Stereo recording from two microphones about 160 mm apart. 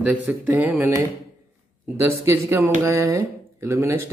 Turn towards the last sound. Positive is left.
turn(degrees=-15)  # may be behind; listen again after turning